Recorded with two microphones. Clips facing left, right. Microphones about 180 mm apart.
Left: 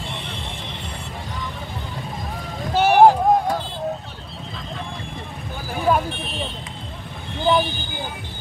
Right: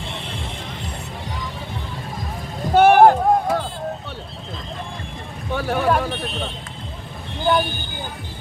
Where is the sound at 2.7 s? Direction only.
55° right (ahead or behind).